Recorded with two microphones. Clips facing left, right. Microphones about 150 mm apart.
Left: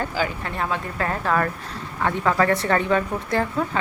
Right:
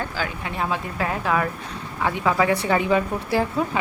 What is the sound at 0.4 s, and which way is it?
A woman's voice, 10° right (ahead or behind).